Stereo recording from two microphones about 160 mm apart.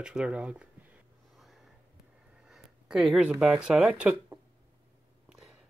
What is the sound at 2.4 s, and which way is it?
Speech, 5° right (ahead or behind).